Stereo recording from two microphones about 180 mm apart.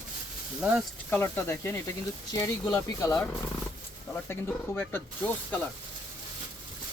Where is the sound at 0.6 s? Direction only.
5° right (ahead or behind).